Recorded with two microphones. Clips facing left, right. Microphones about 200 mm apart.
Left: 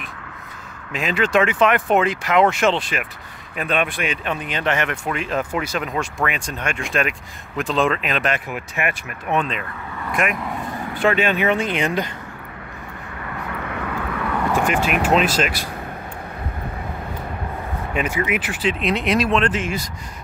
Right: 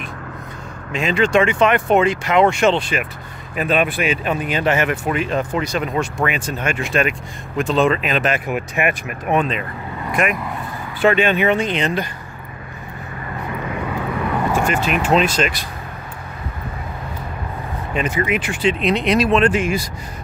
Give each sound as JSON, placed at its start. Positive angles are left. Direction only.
{"t": 0.9, "sound": "speech", "side_deg": 5}
{"t": 8.5, "sound": "speech", "side_deg": -15}
{"t": 14.6, "sound": "speech", "side_deg": 10}
{"t": 17.9, "sound": "speech", "side_deg": 10}